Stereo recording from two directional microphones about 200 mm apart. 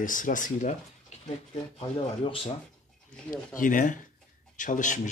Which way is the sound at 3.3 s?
40° left (ahead or behind).